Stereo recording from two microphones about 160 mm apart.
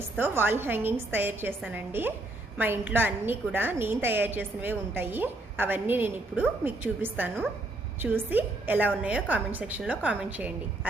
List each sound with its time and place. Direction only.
0.2 s a woman's voice: 15° right (ahead or behind)